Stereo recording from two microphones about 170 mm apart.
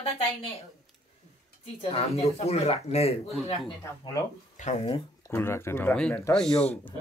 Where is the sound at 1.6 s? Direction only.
35° left (ahead or behind).